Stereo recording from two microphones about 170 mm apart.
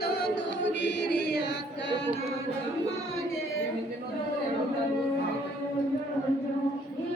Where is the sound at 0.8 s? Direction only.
80° left.